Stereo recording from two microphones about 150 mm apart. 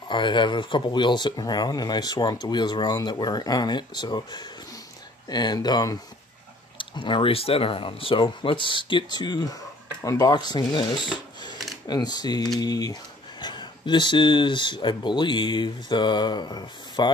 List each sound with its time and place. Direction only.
0.1 s speech: 30° left (ahead or behind)